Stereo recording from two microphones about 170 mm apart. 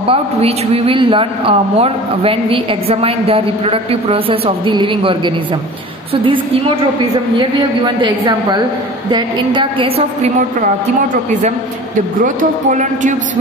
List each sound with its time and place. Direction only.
0.1 s a man's voice: 35° right (ahead or behind)
12.2 s a woman's voice: 50° right (ahead or behind)